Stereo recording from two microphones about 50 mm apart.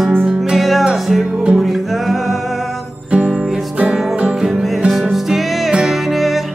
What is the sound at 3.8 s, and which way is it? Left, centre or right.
Music, right.